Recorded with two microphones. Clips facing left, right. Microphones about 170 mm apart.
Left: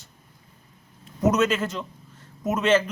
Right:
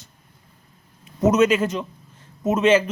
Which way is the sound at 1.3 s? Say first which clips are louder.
Right 5 dB; 15° right (ahead or behind).